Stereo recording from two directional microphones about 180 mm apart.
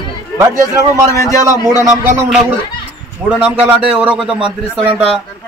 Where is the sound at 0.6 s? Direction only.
15° right (ahead or behind).